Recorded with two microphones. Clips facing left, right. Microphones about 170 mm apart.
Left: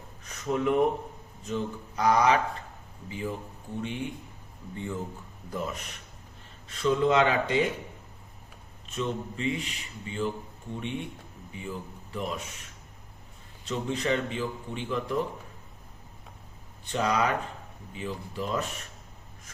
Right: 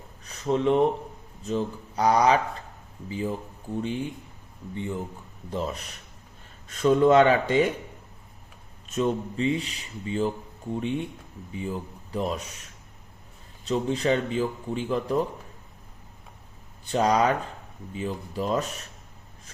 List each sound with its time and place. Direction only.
0.3 s speech: 30° right (ahead or behind)
4.7 s speech: 20° right (ahead or behind)
5.5 s speech: 30° right (ahead or behind); by 7.6 s 50° right (ahead or behind)
8.9 s speech: 40° right (ahead or behind)
13.7 s speech: 35° right (ahead or behind)
16.8 s speech: 35° right (ahead or behind)